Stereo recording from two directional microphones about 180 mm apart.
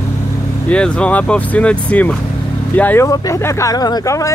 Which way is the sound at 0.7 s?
5° left (ahead or behind).